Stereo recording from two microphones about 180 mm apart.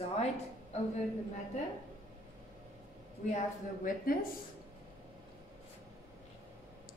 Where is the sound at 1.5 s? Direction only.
40° left (ahead or behind).